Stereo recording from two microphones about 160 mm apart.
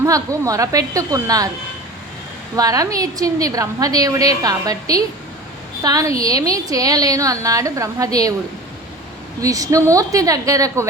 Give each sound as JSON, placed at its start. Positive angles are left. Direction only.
{"t": 0.0, "sound": "a woman's voice", "side_deg": -20}
{"t": 2.6, "sound": "a woman's voice", "side_deg": -20}
{"t": 9.4, "sound": "a woman's voice", "side_deg": -20}